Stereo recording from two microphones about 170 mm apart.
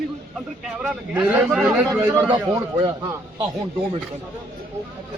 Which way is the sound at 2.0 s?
20° right (ahead or behind).